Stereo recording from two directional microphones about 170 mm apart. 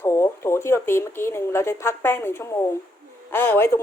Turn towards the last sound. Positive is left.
turn(degrees=15)  # may be behind; listen again after turning